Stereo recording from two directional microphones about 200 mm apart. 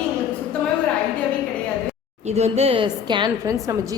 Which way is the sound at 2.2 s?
30° right (ahead or behind).